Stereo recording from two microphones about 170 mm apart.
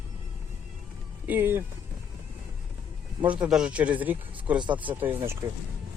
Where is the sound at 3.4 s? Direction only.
5° right (ahead or behind).